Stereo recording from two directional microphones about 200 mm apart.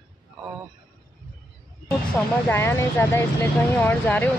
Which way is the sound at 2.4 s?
10° left (ahead or behind).